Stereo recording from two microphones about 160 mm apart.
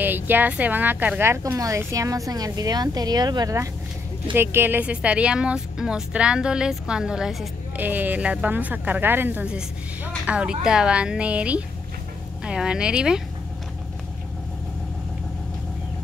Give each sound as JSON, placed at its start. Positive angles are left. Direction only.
{"t": 0.0, "sound": "a woman's voice", "side_deg": -10}